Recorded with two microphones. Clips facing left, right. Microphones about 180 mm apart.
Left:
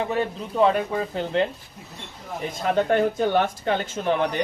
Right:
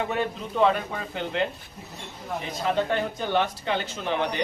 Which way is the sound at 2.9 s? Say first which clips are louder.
Left 5 dB; 45° left (ahead or behind).